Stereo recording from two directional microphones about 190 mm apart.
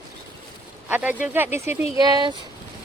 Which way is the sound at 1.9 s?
20° right (ahead or behind).